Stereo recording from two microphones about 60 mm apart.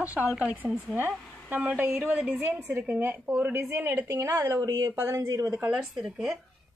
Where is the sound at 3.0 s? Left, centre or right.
Right.